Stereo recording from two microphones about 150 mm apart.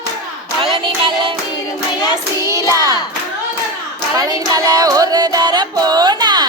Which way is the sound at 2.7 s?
25° right (ahead or behind).